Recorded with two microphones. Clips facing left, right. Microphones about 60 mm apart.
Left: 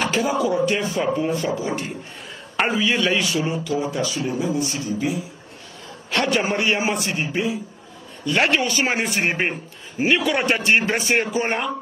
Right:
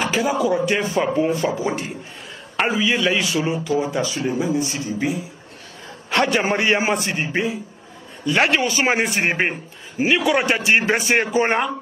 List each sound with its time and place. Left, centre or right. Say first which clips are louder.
0.0 s a sound: right 1 dB; centre
0.3 s speech: right 2 dB; right
1.0 s a man's voice: right 2 dB; centre
1.3 s speech: right 2 dB; right
2.5 s a man's voice: right 1 dB; centre
3.4 s a man's voice: right 2 dB; right
8.3 s speech: right 1 dB; centre
9.5 s a man's voice: right 1 dB; centre
10.8 s a man's voice: right 2 dB; right